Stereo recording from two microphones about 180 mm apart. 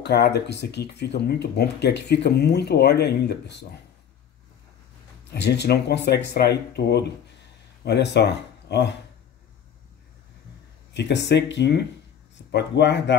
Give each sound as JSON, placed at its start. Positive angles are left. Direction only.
{"t": 0.0, "sound": "speech", "side_deg": 65}
{"t": 5.3, "sound": "speech", "side_deg": 70}
{"t": 10.9, "sound": "speech", "side_deg": 75}